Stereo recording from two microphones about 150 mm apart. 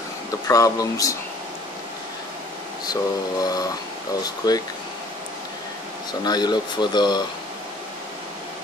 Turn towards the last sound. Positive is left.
turn(degrees=30)  # may be behind; listen again after turning